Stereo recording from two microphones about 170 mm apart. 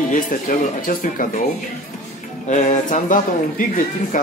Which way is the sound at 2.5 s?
45° left (ahead or behind).